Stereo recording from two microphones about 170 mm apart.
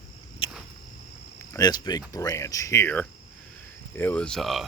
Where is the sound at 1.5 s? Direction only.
25° left (ahead or behind).